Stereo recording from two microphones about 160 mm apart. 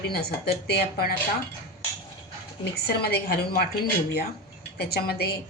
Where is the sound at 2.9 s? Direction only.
80° left.